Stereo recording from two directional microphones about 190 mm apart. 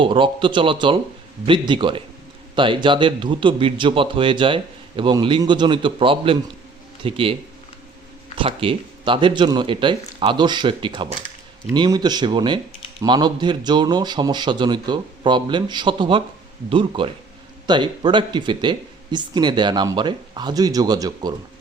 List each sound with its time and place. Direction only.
0.0 s a man's voice: 25° right (ahead or behind)
8.4 s a man's voice: 30° right (ahead or behind)